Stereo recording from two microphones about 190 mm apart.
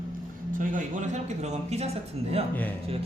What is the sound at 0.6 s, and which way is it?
Speech, 45° right (ahead or behind).